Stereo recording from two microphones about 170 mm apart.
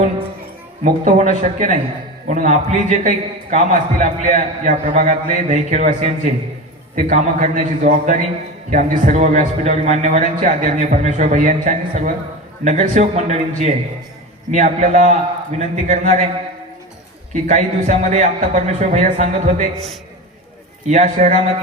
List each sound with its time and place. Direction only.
0.9 s a man's voice: 45° right (ahead or behind)
17.4 s a man's voice: 45° right (ahead or behind)
20.9 s a man's voice: 50° right (ahead or behind)